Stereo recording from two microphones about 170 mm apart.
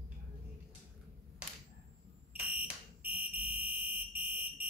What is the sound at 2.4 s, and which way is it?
Fire alarm, 10° right (ahead or behind).